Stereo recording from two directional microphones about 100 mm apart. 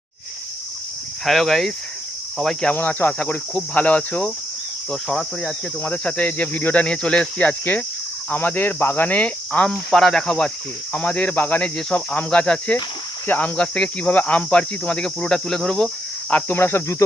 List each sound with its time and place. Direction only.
1.2 s speech: centre (ahead or behind)
2.7 s speech: 20° left (ahead or behind); by 5.5 s 5° left (ahead or behind)
5.8 s speech: 15° left (ahead or behind)
16.3 s speech: 20° left (ahead or behind)